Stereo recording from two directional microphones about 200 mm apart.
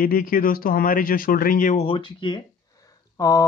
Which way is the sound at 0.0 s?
45° left (ahead or behind).